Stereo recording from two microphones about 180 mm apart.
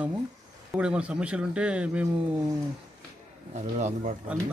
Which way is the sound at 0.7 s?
5° right (ahead or behind).